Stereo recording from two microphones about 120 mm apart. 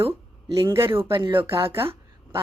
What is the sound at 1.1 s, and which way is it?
Speech, 45° right (ahead or behind).